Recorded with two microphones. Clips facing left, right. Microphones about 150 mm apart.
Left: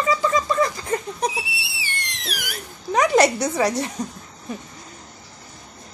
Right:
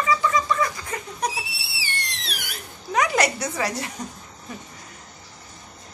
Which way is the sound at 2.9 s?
25° left (ahead or behind).